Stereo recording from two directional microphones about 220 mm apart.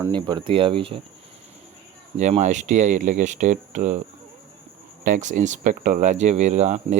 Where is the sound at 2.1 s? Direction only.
30° right (ahead or behind).